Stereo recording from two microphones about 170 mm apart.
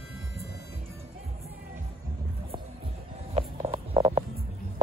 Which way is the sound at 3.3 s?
35° right (ahead or behind).